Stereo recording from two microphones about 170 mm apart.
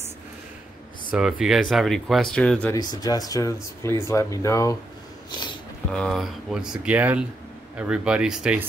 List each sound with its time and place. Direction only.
1.1 s speech: 5° right (ahead or behind)
2.7 s speech: 25° left (ahead or behind)
5.9 s speech: 5° left (ahead or behind)